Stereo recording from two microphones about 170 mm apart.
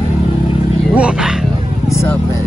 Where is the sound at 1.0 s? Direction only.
5° right (ahead or behind).